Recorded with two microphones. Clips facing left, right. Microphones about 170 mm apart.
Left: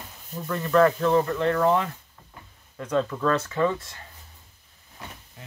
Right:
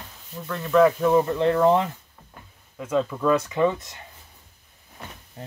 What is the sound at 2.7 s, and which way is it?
Speech, 5° right (ahead or behind).